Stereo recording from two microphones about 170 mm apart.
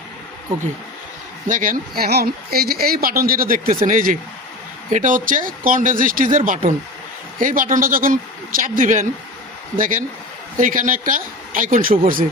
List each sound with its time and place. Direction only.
1.5 s speech: 50° right (ahead or behind)